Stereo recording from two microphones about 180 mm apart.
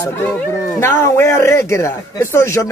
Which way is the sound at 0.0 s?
10° left (ahead or behind).